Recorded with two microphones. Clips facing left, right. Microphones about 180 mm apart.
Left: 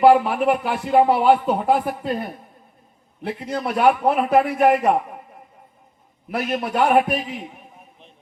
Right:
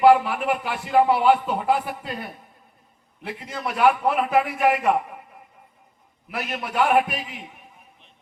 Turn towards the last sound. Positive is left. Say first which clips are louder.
# left 3 dB
turn(degrees=40)  # may be behind; listen again after turning